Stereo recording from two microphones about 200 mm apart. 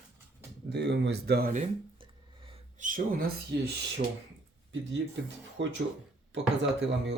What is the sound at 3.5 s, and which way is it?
Speech, 55° right (ahead or behind).